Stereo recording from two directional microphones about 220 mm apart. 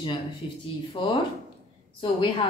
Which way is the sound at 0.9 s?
25° left (ahead or behind).